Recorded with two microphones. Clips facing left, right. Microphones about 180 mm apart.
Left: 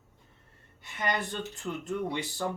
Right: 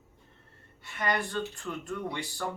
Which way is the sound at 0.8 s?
20° left (ahead or behind).